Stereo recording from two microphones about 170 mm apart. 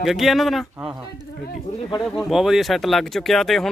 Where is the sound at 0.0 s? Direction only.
Centre (ahead or behind).